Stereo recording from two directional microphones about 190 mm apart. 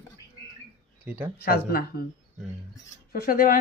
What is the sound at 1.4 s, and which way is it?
Speech, 55° left (ahead or behind).